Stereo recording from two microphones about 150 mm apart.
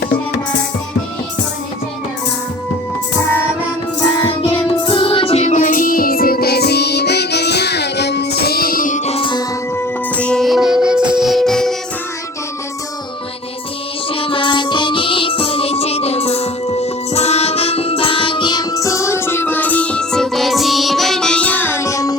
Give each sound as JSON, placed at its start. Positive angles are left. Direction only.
{"t": 4.2, "sound": "music", "side_deg": 35}
{"t": 9.0, "sound": "music", "side_deg": 35}
{"t": 9.7, "sound": "music", "side_deg": 10}
{"t": 14.1, "sound": "music", "side_deg": 35}